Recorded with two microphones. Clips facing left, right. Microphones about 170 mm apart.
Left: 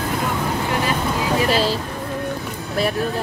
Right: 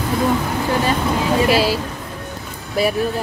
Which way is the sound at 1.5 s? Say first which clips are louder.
Right 3 dB; 10° right (ahead or behind).